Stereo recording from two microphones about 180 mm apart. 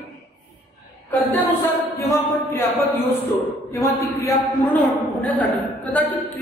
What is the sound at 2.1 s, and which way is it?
A woman's voice, 15° left (ahead or behind).